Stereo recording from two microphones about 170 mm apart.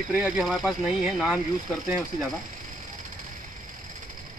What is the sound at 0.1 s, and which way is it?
Speech, 5° right (ahead or behind).